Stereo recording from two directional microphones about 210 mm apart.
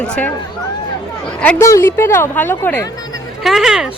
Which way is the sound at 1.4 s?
10° left (ahead or behind).